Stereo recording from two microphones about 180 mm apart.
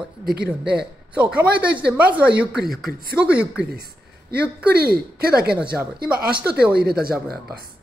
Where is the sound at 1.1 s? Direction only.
10° right (ahead or behind).